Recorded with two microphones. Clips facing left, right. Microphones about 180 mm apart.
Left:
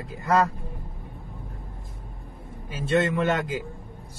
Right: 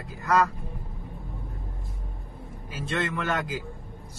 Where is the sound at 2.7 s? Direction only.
25° left (ahead or behind).